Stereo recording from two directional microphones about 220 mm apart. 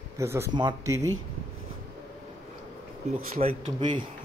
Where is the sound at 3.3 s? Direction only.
25° right (ahead or behind).